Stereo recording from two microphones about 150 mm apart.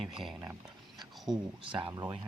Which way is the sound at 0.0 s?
Centre (ahead or behind).